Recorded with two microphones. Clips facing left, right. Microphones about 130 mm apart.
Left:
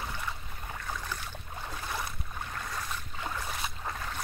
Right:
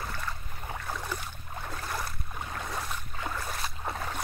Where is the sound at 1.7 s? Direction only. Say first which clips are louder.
Right 1 dB; 5° left (ahead or behind).